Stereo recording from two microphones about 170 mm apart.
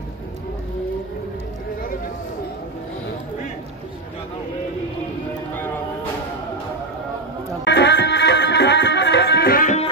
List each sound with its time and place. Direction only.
7.6 s music: 90° left; by 9.7 s 70° left (ahead or behind)